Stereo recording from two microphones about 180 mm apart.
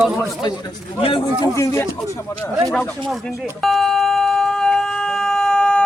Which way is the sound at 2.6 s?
5° left (ahead or behind).